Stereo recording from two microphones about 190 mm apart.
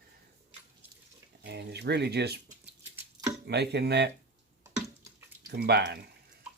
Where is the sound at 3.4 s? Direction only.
60° right (ahead or behind).